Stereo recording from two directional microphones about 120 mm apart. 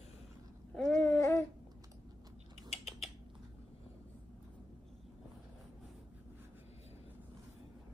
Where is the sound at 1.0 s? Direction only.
25° left (ahead or behind).